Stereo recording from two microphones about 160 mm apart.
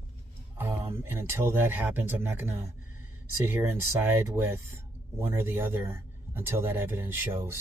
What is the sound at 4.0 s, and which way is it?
Speech, 15° right (ahead or behind).